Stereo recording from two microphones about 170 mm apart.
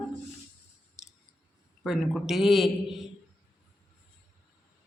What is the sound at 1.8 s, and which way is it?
A man's voice, centre (ahead or behind).